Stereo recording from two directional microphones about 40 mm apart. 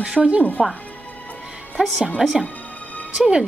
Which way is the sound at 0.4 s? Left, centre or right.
Left.